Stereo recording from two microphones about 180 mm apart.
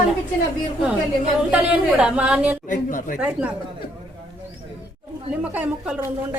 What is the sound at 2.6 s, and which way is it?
Speech, 45° left (ahead or behind).